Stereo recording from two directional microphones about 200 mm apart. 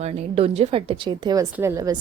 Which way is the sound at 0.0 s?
30° right (ahead or behind).